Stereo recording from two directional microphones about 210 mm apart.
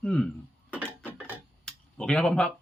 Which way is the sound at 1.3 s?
5° left (ahead or behind).